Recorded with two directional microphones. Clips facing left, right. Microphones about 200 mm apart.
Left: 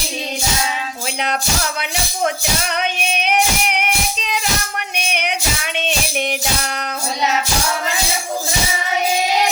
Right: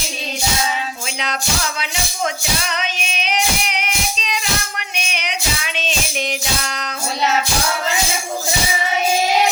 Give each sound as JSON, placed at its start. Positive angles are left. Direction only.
{"t": 1.8, "sound": "music", "side_deg": 60}